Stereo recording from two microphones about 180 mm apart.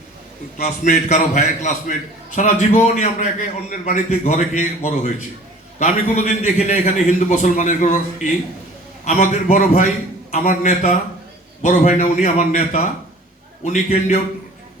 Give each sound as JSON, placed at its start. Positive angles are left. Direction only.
{"t": 0.6, "sound": "a man's voice", "side_deg": 40}